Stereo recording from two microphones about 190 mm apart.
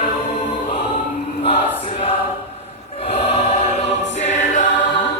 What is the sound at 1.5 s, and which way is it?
Choir, 30° left (ahead or behind).